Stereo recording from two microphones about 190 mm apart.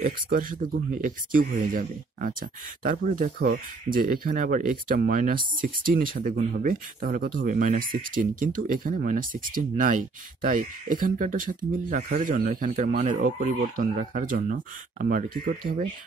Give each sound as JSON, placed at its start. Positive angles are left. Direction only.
{"t": 0.0, "sound": "speech", "side_deg": -45}